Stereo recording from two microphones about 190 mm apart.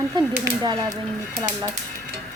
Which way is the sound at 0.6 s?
20° right (ahead or behind).